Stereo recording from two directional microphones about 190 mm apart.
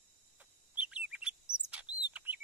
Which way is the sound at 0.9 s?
5° right (ahead or behind).